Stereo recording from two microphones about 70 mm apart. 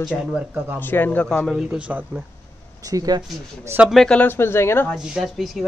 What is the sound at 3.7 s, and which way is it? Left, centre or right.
Speech, right.